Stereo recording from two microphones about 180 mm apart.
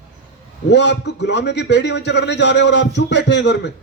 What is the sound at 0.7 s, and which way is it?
A man's voice, 75° left (ahead or behind).